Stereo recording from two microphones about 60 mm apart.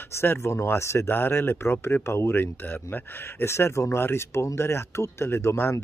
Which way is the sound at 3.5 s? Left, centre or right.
Left.